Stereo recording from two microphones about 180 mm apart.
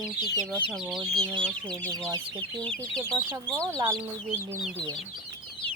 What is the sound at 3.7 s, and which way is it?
Speech, 20° right (ahead or behind).